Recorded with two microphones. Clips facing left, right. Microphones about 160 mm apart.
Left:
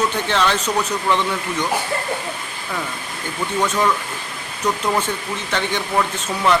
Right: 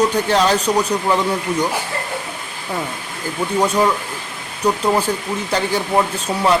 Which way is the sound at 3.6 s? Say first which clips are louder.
Right 3 dB; 35° right (ahead or behind).